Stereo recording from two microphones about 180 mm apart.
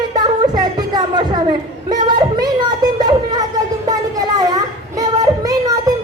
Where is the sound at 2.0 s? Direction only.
25° right (ahead or behind).